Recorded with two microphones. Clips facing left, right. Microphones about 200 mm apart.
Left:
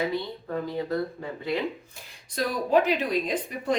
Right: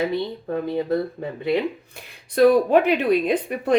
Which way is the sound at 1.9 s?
60° right (ahead or behind).